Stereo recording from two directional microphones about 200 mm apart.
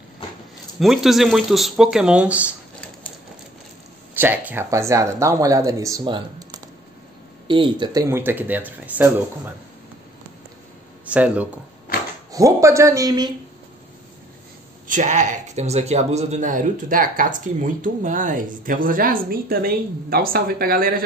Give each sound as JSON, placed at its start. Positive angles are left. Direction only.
{"t": 0.7, "sound": "speech", "side_deg": 0}
{"t": 4.1, "sound": "speech", "side_deg": -10}
{"t": 11.1, "sound": "speech", "side_deg": -5}
{"t": 14.9, "sound": "speech", "side_deg": -40}